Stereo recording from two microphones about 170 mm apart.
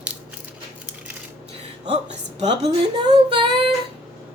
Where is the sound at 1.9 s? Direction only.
40° right (ahead or behind).